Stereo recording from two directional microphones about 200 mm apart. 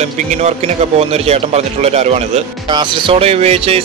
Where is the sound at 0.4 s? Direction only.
35° right (ahead or behind).